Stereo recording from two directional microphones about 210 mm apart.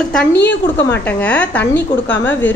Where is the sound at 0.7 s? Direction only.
10° left (ahead or behind).